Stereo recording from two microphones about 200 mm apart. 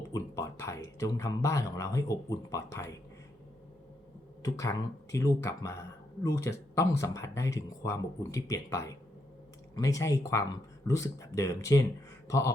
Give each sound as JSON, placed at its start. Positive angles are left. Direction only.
{"t": 0.1, "sound": "speech", "side_deg": 15}
{"t": 4.4, "sound": "speech", "side_deg": 15}